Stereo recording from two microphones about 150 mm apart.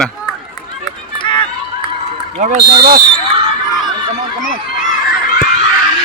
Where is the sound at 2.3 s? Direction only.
50° right (ahead or behind).